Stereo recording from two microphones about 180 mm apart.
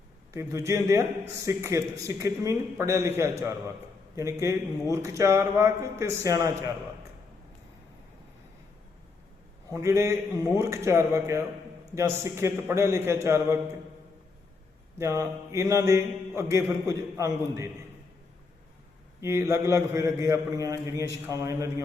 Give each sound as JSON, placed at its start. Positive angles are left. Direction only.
{"t": 0.3, "sound": "mantra", "side_deg": -15}
{"t": 9.7, "sound": "mantra", "side_deg": -15}
{"t": 14.9, "sound": "mantra", "side_deg": -15}
{"t": 19.2, "sound": "mantra", "side_deg": -15}